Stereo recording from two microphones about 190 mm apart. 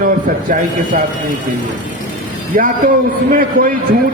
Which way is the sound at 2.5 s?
45° right (ahead or behind).